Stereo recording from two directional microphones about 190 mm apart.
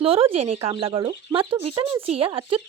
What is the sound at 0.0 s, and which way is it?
Speech, 30° right (ahead or behind).